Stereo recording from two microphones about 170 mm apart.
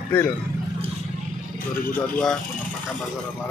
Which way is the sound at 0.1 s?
10° left (ahead or behind).